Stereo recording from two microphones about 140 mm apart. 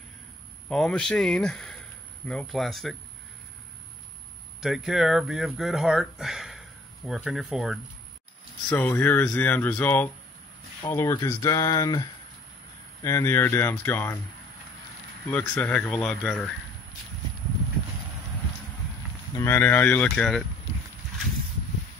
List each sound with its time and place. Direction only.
0.7 s speech: 5° left (ahead or behind)
4.6 s speech: 5° right (ahead or behind)
8.6 s speech: 15° left (ahead or behind)
15.3 s speech: 10° left (ahead or behind)
19.3 s speech: 15° left (ahead or behind)